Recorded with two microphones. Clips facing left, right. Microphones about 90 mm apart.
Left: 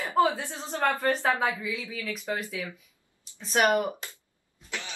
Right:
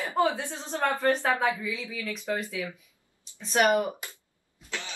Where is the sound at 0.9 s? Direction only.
15° left (ahead or behind).